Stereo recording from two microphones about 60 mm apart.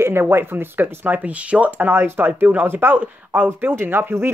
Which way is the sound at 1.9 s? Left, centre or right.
Right.